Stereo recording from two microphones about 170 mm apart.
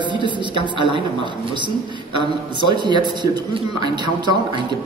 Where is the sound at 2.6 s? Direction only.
25° right (ahead or behind).